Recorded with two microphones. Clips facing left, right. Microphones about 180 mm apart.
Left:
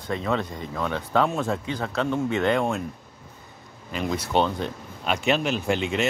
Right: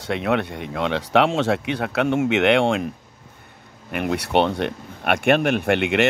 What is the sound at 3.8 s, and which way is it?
Speech, 65° right (ahead or behind).